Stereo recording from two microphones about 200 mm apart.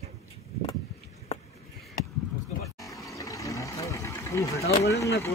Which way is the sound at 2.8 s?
15° left (ahead or behind).